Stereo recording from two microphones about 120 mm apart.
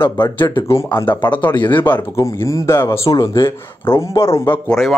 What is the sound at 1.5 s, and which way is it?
Speech, 40° left (ahead or behind).